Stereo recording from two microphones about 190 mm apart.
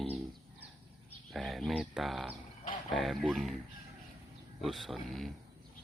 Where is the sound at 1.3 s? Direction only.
Centre (ahead or behind).